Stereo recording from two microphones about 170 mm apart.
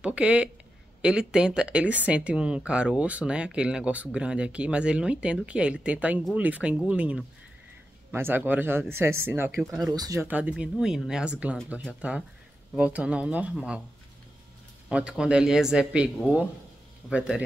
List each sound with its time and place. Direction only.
0.0 s speech: 5° right (ahead or behind)
10.2 s speech: 10° right (ahead or behind)
14.9 s speech: 5° right (ahead or behind)